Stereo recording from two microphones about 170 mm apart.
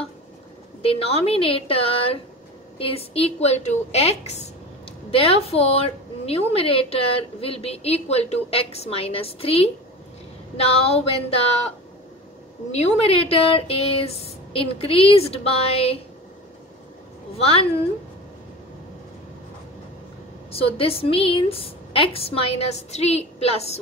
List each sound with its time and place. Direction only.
0.8 s a woman's voice: 35° left (ahead or behind)
12.7 s speech: 40° left (ahead or behind)
17.4 s speech: 35° left (ahead or behind)
20.5 s speech: 35° left (ahead or behind)